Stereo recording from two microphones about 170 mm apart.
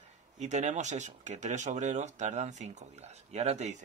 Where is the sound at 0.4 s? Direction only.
45° right (ahead or behind).